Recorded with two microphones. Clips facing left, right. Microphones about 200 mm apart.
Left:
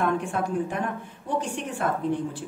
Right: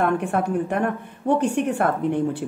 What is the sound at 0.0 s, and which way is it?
A woman's voice, 60° right (ahead or behind).